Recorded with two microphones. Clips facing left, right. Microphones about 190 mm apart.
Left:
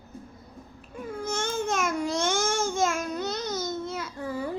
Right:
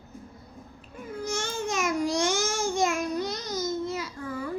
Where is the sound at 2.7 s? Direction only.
Centre (ahead or behind).